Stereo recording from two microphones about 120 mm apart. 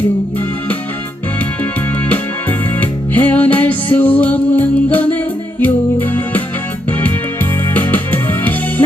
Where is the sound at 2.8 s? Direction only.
15° left (ahead or behind).